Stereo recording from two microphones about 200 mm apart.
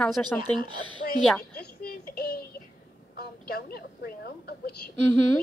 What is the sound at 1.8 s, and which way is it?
Music, 50° left (ahead or behind).